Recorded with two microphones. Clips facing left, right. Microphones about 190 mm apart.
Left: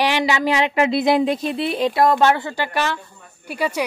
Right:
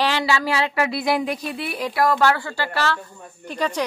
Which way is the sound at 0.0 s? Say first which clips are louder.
Left 2 dB; 20° left (ahead or behind).